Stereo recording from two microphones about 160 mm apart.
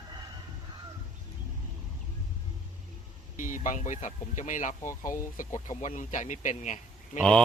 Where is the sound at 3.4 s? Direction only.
55° left (ahead or behind).